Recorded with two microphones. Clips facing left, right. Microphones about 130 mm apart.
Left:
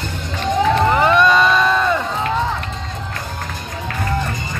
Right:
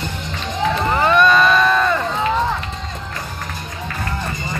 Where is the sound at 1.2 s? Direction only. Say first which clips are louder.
Even; 20° left (ahead or behind).